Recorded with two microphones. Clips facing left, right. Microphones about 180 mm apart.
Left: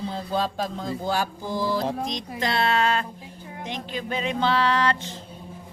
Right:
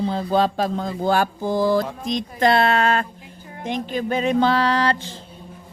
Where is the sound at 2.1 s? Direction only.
55° right (ahead or behind).